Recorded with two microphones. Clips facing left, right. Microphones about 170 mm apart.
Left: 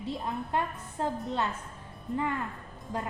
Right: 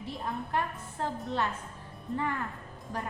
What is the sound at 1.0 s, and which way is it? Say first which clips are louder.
Speech: left 3 dB; 15° left (ahead or behind).